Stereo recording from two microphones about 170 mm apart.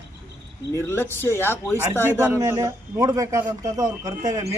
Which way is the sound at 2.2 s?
15° right (ahead or behind).